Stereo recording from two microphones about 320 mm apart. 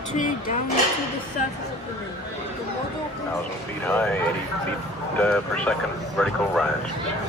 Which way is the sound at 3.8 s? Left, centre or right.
Centre.